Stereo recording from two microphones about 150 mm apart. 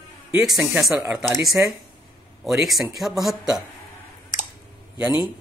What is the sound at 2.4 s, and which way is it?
Speech, centre (ahead or behind).